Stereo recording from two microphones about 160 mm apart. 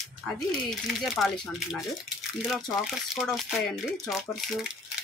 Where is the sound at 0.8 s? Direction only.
Centre (ahead or behind).